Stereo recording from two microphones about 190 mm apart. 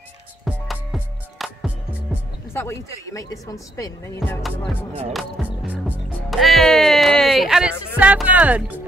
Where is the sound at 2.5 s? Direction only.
15° left (ahead or behind).